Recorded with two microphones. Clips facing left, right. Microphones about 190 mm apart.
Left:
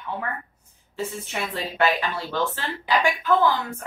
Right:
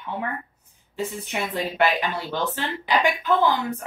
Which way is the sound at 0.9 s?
15° right (ahead or behind).